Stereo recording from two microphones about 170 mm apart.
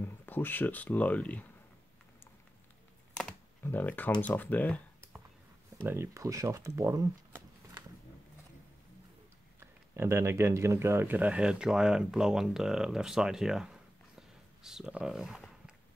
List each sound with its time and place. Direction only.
0.0 s speech: 10° left (ahead or behind)
3.6 s speech: 10° left (ahead or behind)
5.9 s speech: 15° right (ahead or behind)
9.6 s speech: 15° right (ahead or behind)